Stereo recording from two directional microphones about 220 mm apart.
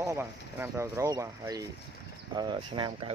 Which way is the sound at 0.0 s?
10° right (ahead or behind).